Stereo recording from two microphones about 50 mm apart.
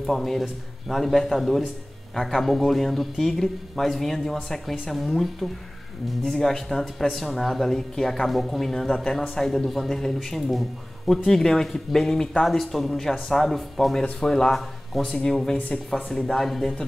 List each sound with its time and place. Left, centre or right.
0.0 s speech: centre